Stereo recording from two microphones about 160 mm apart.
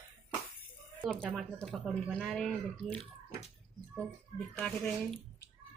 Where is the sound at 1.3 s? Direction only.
5° left (ahead or behind).